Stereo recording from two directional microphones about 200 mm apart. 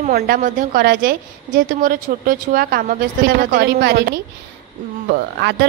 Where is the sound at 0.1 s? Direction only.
45° right (ahead or behind).